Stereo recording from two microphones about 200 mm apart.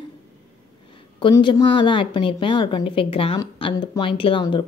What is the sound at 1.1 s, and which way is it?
A woman's voice, 25° left (ahead or behind).